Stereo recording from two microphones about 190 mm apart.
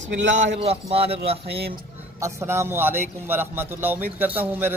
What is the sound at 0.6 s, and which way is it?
Speech, 30° right (ahead or behind).